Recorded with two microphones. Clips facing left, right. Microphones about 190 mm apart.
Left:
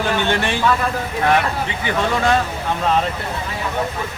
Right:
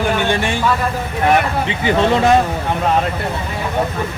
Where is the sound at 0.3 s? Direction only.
15° right (ahead or behind).